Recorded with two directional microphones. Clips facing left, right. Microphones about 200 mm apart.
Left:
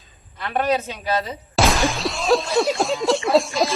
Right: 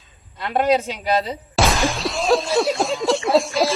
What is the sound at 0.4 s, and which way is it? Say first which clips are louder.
Speech: right 3 dB; 15° right (ahead or behind).